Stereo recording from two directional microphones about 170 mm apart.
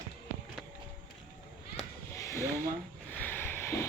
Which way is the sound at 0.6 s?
Centre (ahead or behind).